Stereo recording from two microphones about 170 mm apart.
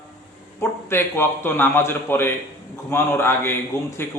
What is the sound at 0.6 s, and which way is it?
A man's voice, 15° left (ahead or behind).